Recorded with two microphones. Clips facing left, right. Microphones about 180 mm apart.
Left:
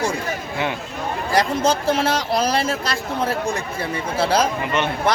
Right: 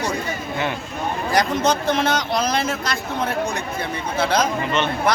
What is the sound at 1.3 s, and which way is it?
A man's voice, 30° left (ahead or behind).